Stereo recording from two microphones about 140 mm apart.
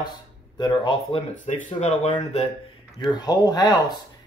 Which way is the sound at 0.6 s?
35° left (ahead or behind).